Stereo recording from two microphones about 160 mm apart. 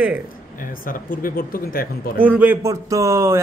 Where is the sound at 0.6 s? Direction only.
60° left (ahead or behind).